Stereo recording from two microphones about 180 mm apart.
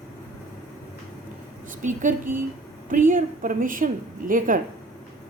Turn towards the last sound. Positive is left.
turn(degrees=-50)  # may be behind; listen again after turning